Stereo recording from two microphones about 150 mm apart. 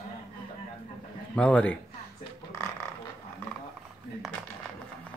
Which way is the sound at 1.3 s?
5° left (ahead or behind).